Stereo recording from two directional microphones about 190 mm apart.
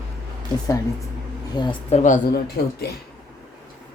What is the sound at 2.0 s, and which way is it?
Speech, 50° left (ahead or behind).